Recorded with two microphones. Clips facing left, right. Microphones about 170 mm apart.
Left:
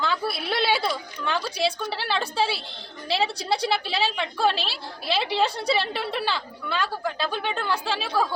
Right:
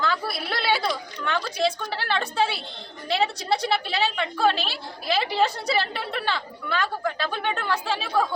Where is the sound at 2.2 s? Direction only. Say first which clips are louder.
Right 1 dB; 30° left (ahead or behind).